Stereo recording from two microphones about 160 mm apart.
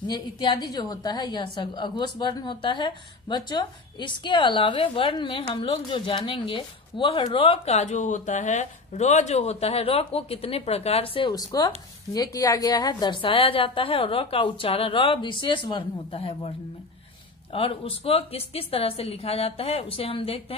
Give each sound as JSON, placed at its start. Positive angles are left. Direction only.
{"t": 0.0, "sound": "a woman's voice", "side_deg": 25}